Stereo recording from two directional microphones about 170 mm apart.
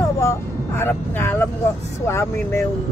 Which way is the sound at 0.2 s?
15° left (ahead or behind).